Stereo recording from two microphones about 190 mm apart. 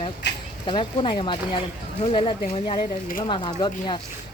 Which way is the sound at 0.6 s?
25° left (ahead or behind).